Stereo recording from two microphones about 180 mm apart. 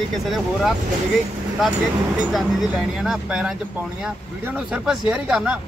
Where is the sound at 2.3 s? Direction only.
Centre (ahead or behind).